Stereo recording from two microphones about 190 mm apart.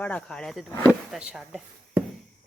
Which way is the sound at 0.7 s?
10° left (ahead or behind).